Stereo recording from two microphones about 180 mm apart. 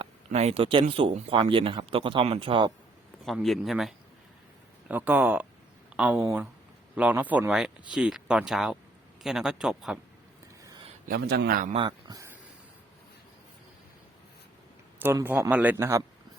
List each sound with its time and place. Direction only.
0.0 s speech: 35° right (ahead or behind)
3.2 s a man's voice: centre (ahead or behind)
11.0 s a man's voice: 60° right (ahead or behind)
11.7 s speech: 25° right (ahead or behind)
14.9 s a man's voice: 10° right (ahead or behind)